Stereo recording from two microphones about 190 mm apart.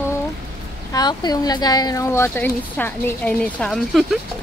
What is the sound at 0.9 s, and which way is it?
Speech, 20° left (ahead or behind).